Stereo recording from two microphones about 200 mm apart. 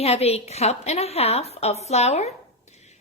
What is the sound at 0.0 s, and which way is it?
A woman's voice, 30° left (ahead or behind).